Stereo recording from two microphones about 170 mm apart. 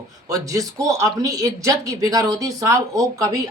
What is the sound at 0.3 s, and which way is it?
Speech, 20° right (ahead or behind).